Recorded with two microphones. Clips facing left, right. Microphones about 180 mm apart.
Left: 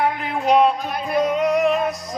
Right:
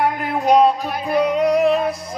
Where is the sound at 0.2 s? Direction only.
40° right (ahead or behind).